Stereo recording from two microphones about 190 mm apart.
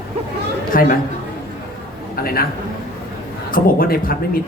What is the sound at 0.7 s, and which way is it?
Speech, 50° left (ahead or behind).